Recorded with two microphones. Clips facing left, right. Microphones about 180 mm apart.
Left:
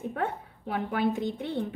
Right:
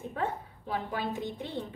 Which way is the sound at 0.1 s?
60° left (ahead or behind).